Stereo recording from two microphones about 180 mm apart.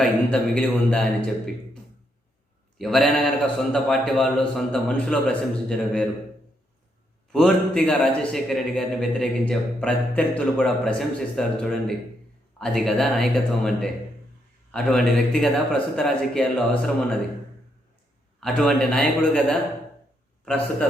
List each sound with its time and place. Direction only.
0.0 s a man's voice: 5° left (ahead or behind)
2.7 s a man's voice: centre (ahead or behind)
7.3 s a man's voice: 5° left (ahead or behind)
14.7 s a man's voice: centre (ahead or behind)
18.3 s a man's voice: 5° left (ahead or behind)